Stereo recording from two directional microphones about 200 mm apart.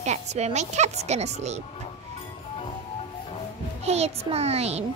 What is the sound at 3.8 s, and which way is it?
A child's voice, 30° right (ahead or behind).